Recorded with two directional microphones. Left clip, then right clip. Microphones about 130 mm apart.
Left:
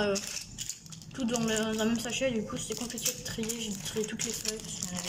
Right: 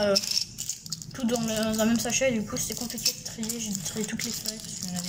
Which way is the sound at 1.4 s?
5° right (ahead or behind).